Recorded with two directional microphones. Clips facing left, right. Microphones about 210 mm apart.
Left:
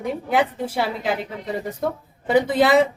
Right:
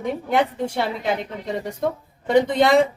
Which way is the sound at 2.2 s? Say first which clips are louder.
Even; 5° left (ahead or behind).